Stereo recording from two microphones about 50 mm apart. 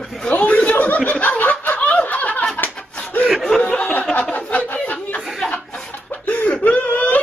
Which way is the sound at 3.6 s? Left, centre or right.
Left.